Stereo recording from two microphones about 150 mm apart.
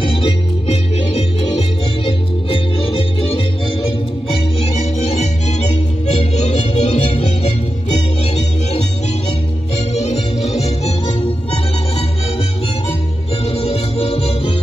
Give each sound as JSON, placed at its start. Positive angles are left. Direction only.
{"t": 0.0, "sound": "music", "side_deg": 35}
{"t": 4.9, "sound": "music", "side_deg": 45}
{"t": 9.9, "sound": "music", "side_deg": 45}
{"t": 13.5, "sound": "music", "side_deg": 40}